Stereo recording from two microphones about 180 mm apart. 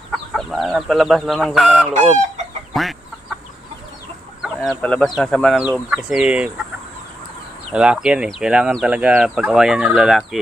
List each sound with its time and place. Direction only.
0.1 s speech: centre (ahead or behind)
2.7 s chicken: centre (ahead or behind)
4.4 s speech: 5° left (ahead or behind)
7.7 s speech: 5° right (ahead or behind)